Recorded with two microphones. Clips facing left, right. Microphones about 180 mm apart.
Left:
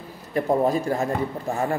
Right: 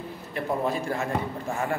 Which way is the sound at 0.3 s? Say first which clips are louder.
Left 7 dB; 40° left (ahead or behind).